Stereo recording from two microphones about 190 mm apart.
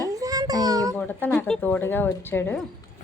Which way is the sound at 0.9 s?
10° left (ahead or behind).